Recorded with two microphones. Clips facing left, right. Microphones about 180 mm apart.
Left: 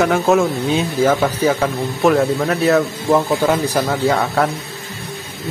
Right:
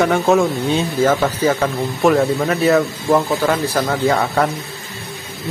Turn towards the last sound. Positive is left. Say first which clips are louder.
# even
turn(degrees=0)  # may be behind; listen again after turning